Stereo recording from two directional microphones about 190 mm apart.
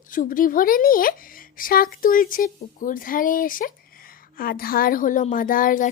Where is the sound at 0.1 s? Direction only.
50° left (ahead or behind).